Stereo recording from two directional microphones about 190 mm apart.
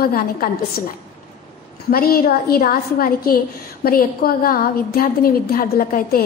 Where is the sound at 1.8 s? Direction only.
50° left (ahead or behind).